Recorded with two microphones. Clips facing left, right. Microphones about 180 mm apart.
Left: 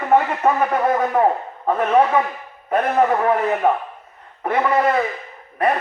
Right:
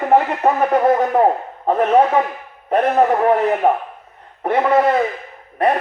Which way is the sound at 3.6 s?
30° right (ahead or behind).